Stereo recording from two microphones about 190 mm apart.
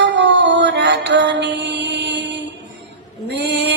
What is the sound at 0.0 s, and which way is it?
Music, 70° right (ahead or behind).